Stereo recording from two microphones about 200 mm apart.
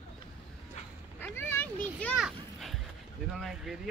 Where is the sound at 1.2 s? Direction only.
10° left (ahead or behind).